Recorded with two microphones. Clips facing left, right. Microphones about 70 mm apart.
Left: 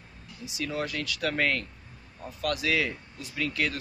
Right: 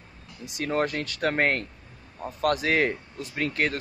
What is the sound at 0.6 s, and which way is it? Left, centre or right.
Speech, right.